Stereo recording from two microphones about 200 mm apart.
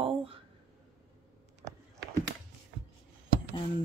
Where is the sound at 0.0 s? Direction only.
30° right (ahead or behind).